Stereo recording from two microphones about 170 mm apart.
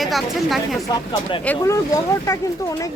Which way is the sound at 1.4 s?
15° left (ahead or behind).